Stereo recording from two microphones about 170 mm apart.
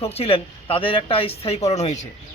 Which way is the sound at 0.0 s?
35° left (ahead or behind).